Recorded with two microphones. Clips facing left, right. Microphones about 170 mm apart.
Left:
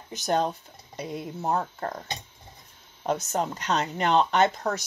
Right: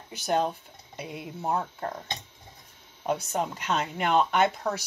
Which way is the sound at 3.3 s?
5° right (ahead or behind).